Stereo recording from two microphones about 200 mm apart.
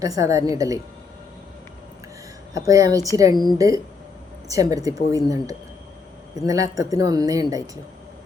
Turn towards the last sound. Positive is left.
turn(degrees=-15)  # may be behind; listen again after turning